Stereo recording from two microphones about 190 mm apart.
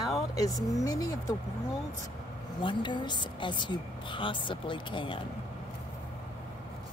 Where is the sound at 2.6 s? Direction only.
25° left (ahead or behind).